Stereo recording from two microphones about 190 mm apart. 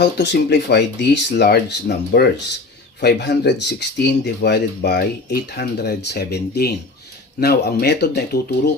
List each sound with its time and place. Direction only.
0.0 s speech: 65° left (ahead or behind)